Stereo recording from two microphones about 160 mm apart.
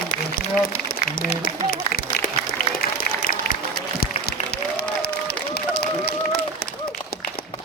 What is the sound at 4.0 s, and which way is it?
Applause, 80° left.